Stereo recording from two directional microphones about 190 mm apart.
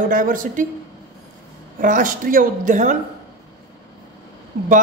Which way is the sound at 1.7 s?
45° right (ahead or behind).